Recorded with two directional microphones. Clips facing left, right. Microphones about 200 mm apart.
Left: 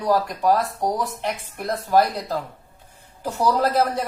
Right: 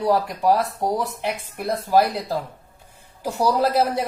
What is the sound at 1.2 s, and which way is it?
A woman's voice, 10° right (ahead or behind).